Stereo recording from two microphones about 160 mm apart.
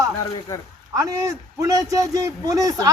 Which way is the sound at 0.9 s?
20° right (ahead or behind).